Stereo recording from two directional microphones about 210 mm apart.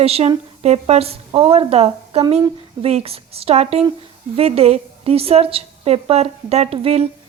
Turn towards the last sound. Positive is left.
turn(degrees=-30)  # may be behind; listen again after turning